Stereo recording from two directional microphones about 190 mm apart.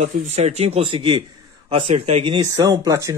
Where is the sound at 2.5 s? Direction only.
20° right (ahead or behind).